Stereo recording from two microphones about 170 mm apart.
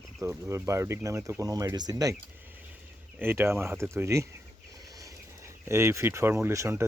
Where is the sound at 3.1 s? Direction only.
15° right (ahead or behind).